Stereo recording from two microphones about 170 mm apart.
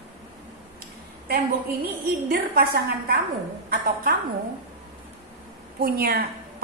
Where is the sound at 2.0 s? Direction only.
60° right (ahead or behind).